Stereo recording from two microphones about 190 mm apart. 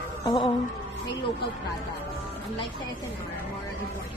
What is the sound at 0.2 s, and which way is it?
Music, 20° left (ahead or behind).